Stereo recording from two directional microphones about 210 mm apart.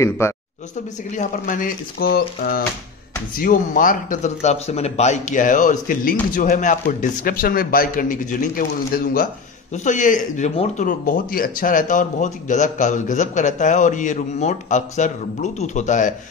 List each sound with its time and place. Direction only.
1.1 s speech: 40° left (ahead or behind)